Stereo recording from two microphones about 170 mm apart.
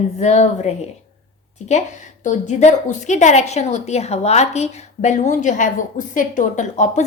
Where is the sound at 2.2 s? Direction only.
45° left (ahead or behind).